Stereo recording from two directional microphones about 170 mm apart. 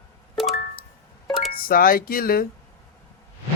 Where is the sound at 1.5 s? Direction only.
55° left (ahead or behind).